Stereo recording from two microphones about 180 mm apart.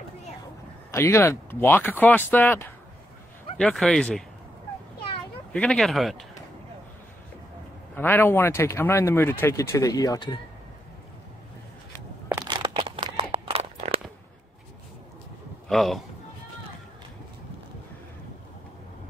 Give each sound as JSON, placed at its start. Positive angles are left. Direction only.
{"t": 0.9, "sound": "speech", "side_deg": 15}
{"t": 5.5, "sound": "speech", "side_deg": 5}
{"t": 7.9, "sound": "speech", "side_deg": 10}
{"t": 12.4, "sound": "a sound", "side_deg": -25}
{"t": 15.7, "sound": "speech", "side_deg": 0}